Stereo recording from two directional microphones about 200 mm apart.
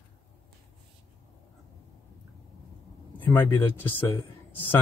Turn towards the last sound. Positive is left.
turn(degrees=10)  # may be behind; listen again after turning